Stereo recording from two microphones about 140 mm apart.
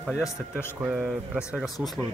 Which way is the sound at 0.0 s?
Centre (ahead or behind).